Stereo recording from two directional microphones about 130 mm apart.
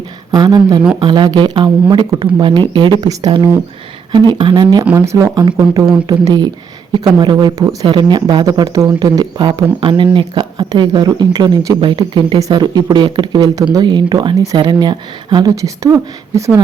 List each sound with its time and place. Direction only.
0.3 s speech: 30° right (ahead or behind)